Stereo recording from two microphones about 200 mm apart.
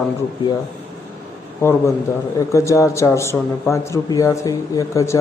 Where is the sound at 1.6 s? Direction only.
10° left (ahead or behind).